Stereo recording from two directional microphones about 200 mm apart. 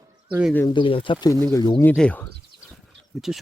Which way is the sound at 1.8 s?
10° left (ahead or behind).